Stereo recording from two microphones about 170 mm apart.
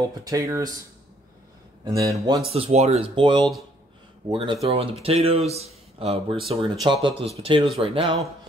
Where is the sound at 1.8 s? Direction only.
20° right (ahead or behind).